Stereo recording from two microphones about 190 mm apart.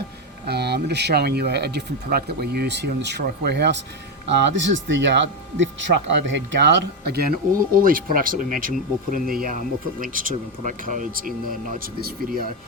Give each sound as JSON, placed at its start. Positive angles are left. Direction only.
{"t": 0.4, "sound": "speech", "side_deg": -60}